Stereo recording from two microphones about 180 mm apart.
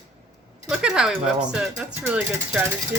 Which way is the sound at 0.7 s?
5° right (ahead or behind).